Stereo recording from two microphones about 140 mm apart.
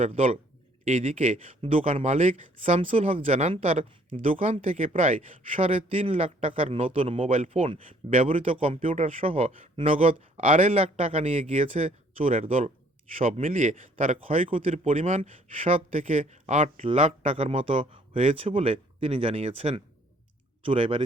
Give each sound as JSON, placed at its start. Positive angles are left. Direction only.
{"t": 0.0, "sound": "a man's voice", "side_deg": -45}
{"t": 0.9, "sound": "a man's voice", "side_deg": -60}
{"t": 1.5, "sound": "a man's voice", "side_deg": -45}
{"t": 4.6, "sound": "a man's voice", "side_deg": -60}
{"t": 5.5, "sound": "a man's voice", "side_deg": -45}
{"t": 8.2, "sound": "a man's voice", "side_deg": -45}
{"t": 13.4, "sound": "a man's voice", "side_deg": -65}
{"t": 14.5, "sound": "a man's voice", "side_deg": -45}